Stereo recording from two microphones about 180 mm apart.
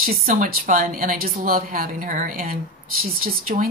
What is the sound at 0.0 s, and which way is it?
Speech, 50° right (ahead or behind).